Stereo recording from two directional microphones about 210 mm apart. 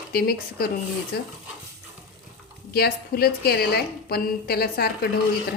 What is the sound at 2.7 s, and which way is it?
A woman's voice, 50° left (ahead or behind).